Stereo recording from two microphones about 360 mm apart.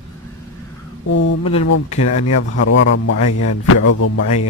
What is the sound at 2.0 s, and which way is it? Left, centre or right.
Speech, left.